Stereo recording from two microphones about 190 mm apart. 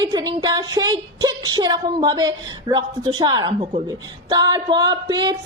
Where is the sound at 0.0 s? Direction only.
20° right (ahead or behind).